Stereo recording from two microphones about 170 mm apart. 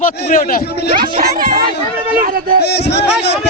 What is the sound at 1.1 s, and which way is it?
Speech, 55° right (ahead or behind).